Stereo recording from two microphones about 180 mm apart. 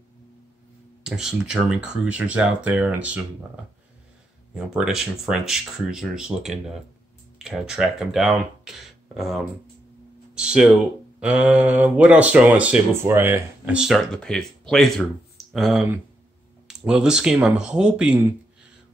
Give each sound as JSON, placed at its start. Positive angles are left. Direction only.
{"t": 1.0, "sound": "speech", "side_deg": -5}
{"t": 4.6, "sound": "speech", "side_deg": -5}